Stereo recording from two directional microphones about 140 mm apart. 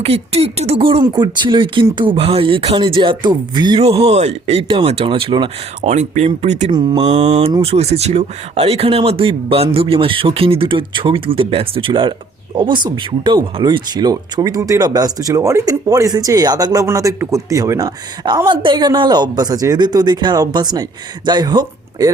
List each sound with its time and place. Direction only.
0.0 s speech: 45° right (ahead or behind)
3.8 s speech: 45° right (ahead or behind)
5.9 s speech: 55° right (ahead or behind)
6.7 s speech: 30° right (ahead or behind)
7.0 s speech: 55° right (ahead or behind); by 22.1 s 30° right (ahead or behind)